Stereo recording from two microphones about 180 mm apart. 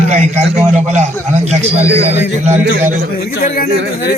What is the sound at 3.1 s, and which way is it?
Speech, 60° left (ahead or behind).